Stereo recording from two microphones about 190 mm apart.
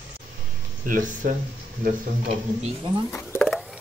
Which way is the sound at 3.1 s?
10° left (ahead or behind).